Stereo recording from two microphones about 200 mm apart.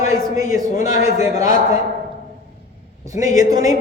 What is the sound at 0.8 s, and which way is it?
Speech, 35° left (ahead or behind).